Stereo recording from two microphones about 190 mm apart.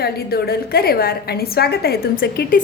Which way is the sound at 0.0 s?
55° left (ahead or behind).